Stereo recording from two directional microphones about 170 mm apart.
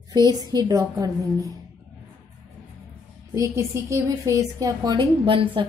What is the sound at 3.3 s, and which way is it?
A woman's voice, 15° right (ahead or behind).